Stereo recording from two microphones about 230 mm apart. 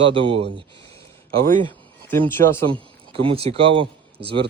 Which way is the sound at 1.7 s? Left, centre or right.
Centre.